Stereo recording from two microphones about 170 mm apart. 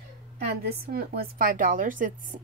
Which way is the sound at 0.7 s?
65° right (ahead or behind).